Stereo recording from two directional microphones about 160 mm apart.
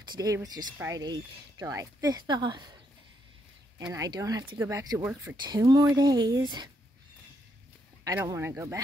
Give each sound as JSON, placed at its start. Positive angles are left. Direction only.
{"t": 0.0, "sound": "speech", "side_deg": -25}
{"t": 3.9, "sound": "speech", "side_deg": -20}
{"t": 5.4, "sound": "speech", "side_deg": -25}
{"t": 8.3, "sound": "speech", "side_deg": -15}